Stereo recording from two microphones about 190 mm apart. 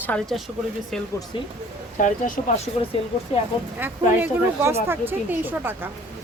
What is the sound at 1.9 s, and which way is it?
Speech, 40° left (ahead or behind).